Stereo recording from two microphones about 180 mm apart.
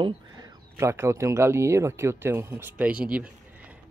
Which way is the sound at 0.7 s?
15° right (ahead or behind).